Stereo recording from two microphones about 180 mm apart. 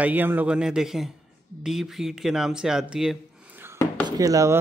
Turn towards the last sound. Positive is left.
turn(degrees=-20)  # may be behind; listen again after turning